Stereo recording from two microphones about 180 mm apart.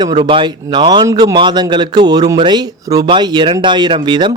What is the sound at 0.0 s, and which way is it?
Speech, 25° right (ahead or behind).